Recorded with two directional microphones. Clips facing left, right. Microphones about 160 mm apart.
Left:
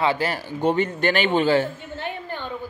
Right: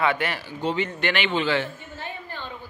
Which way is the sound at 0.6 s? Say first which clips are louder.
Left 5 dB; 50° left (ahead or behind).